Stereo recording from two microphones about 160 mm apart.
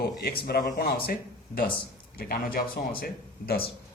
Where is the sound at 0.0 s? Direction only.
75° left (ahead or behind).